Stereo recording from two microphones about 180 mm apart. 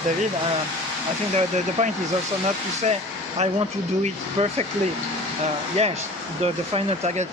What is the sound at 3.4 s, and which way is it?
Speech, 40° right (ahead or behind).